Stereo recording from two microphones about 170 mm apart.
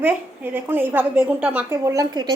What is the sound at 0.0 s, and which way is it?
A child's voice, 10° right (ahead or behind).